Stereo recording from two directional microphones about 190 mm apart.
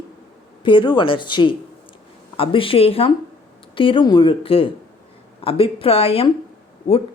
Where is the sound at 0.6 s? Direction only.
25° left (ahead or behind).